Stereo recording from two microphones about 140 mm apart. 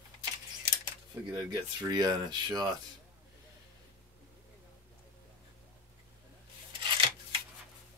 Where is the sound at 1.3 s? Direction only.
30° right (ahead or behind).